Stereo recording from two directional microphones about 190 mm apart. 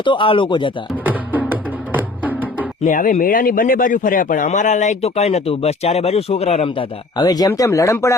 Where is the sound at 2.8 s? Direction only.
45° left (ahead or behind); by 8.1 s 15° left (ahead or behind).